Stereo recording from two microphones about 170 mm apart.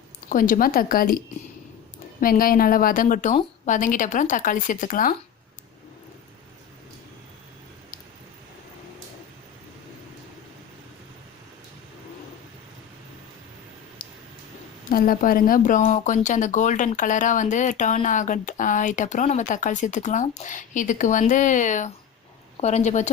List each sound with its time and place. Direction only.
0.3 s a woman's voice: 55° left (ahead or behind)
2.2 s a woman's voice: 55° left (ahead or behind)
14.8 s a woman's voice: 55° left (ahead or behind)